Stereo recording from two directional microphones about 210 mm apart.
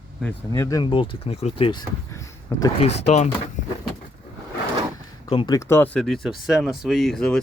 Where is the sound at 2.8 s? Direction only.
30° left (ahead or behind).